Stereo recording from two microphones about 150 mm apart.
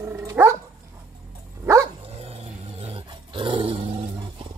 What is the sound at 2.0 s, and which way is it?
Dog, 45° right (ahead or behind).